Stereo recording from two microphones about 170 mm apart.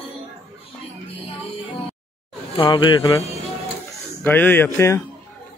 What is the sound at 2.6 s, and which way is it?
Speech, 30° left (ahead or behind).